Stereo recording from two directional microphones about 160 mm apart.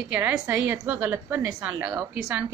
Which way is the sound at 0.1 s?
10° right (ahead or behind).